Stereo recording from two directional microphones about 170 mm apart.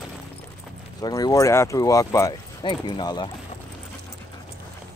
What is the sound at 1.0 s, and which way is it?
Speech, 25° left (ahead or behind).